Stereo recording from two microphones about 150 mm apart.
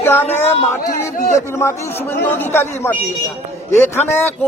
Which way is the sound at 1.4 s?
20° left (ahead or behind).